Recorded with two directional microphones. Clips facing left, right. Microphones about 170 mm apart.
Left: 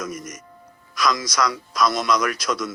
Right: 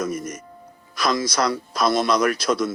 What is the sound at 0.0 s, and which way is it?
Speech, 30° right (ahead or behind).